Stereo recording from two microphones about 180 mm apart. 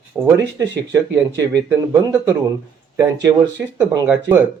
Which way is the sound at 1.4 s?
20° right (ahead or behind).